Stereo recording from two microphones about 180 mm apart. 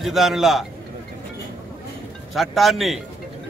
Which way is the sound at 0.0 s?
Centre (ahead or behind).